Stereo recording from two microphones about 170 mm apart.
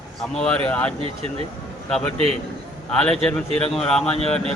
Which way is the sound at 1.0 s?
35° right (ahead or behind).